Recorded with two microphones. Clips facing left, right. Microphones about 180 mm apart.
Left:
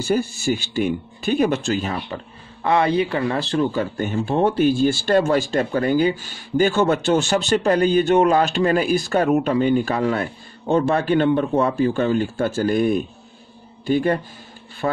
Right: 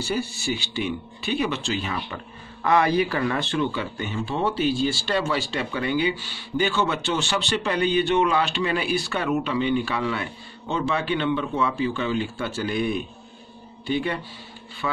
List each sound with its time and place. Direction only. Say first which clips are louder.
0.0 s speech: left 6 dB; 50° left (ahead or behind)
2.6 s speech: left 2 dB; 30° left (ahead or behind); by 14.2 s 45° left (ahead or behind)